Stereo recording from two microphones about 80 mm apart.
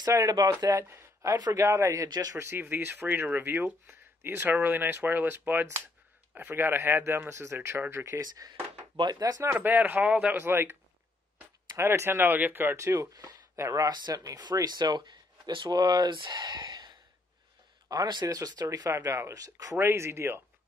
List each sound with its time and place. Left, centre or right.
0.0 s speech: right
0.8 s a sound: right
1.6 s speech: right
2.0 s speech: right
2.3 s speech: right
8.4 s speech: right
8.9 s speech: right
9.4 s speech: right
12.8 s speech: right
13.8 s speech: right
17.8 s speech: right
19.0 s speech: right
19.8 s speech: right